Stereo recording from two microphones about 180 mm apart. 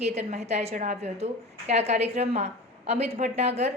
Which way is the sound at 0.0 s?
35° right (ahead or behind).